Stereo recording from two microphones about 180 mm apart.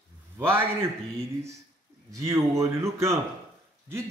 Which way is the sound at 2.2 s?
15° right (ahead or behind).